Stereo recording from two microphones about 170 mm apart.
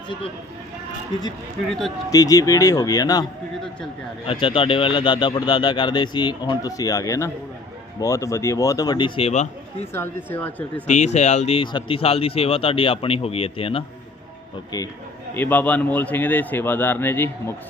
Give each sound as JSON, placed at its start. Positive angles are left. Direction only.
{"t": 2.0, "sound": "speech", "side_deg": 20}
{"t": 4.3, "sound": "speech", "side_deg": 30}
{"t": 9.9, "sound": "speech", "side_deg": 15}
{"t": 10.8, "sound": "speech", "side_deg": 40}
{"t": 15.4, "sound": "speech", "side_deg": 10}